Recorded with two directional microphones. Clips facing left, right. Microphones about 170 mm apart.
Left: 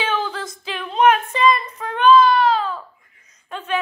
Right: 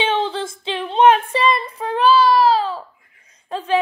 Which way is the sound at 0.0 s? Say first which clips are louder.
Right 4 dB; 30° right (ahead or behind).